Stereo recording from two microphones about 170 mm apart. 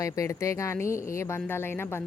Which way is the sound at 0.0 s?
20° left (ahead or behind).